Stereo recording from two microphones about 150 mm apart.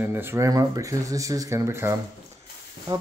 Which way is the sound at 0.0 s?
15° right (ahead or behind).